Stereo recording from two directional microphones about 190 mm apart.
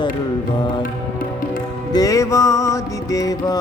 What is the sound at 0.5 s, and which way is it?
Music, 25° left (ahead or behind).